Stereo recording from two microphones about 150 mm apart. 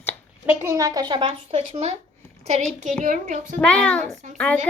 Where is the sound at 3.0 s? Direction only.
55° right (ahead or behind).